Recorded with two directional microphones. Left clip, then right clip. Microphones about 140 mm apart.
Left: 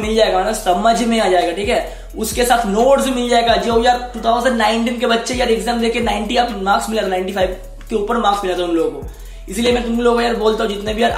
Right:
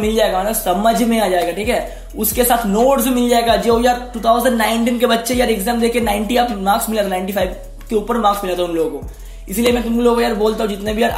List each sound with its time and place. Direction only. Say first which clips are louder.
0.0 s speech: left 1 dB; 40° right (ahead or behind)
9.6 s speech: even; 35° right (ahead or behind)